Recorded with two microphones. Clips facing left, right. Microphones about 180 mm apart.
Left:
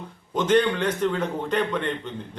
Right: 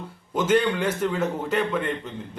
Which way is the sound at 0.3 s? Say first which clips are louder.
Left 1 dB; 5° right (ahead or behind).